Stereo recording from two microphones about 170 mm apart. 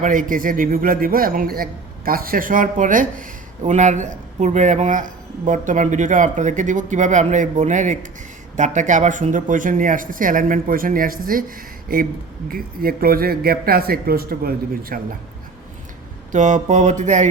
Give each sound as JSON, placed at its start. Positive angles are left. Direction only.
{"t": 0.0, "sound": "a man's voice", "side_deg": -50}
{"t": 16.3, "sound": "a man's voice", "side_deg": -45}